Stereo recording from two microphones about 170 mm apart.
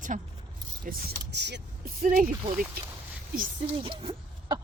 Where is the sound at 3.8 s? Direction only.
30° right (ahead or behind).